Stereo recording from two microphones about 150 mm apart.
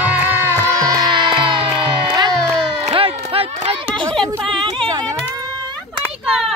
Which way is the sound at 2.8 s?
40° right (ahead or behind).